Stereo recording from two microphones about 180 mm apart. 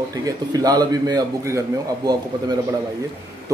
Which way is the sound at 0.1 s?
20° right (ahead or behind).